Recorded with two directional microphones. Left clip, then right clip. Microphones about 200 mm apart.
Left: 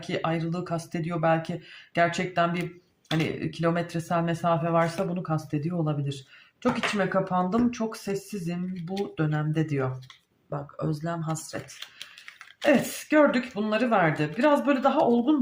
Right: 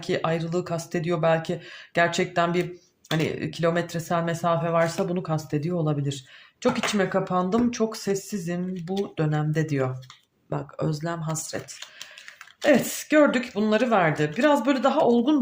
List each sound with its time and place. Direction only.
0.0 s speech: 35° right (ahead or behind)
7.3 s speech: 35° right (ahead or behind)
12.6 s speech: 35° right (ahead or behind)